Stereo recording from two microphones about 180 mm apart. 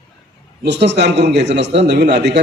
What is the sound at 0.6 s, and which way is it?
A man's voice, 75° right (ahead or behind).